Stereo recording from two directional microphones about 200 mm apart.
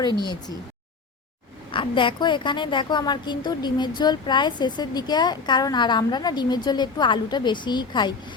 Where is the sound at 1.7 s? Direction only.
25° left (ahead or behind).